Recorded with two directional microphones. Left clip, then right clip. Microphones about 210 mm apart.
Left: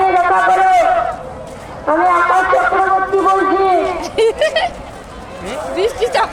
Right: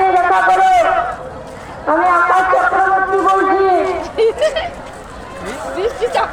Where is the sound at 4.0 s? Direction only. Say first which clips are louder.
Left 1 dB; 50° left (ahead or behind).